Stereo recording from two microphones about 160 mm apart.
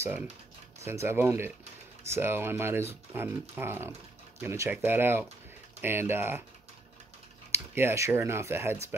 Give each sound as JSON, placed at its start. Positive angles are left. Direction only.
{"t": 0.7, "sound": "speech", "side_deg": -15}
{"t": 7.5, "sound": "speech", "side_deg": -15}